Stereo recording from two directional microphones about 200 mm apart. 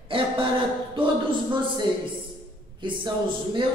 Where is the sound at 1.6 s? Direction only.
25° right (ahead or behind).